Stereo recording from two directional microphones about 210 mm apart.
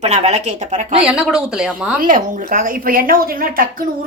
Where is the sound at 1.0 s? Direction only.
5° right (ahead or behind).